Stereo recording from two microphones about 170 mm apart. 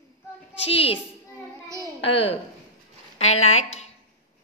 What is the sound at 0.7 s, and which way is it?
Speech, 35° left (ahead or behind).